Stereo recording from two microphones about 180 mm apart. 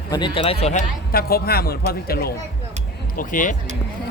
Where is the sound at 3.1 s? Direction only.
45° left (ahead or behind).